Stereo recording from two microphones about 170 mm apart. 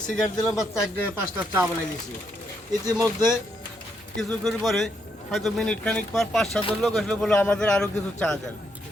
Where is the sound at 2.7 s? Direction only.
20° right (ahead or behind).